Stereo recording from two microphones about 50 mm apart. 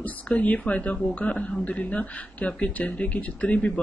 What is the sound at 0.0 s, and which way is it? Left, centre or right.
Speech, left.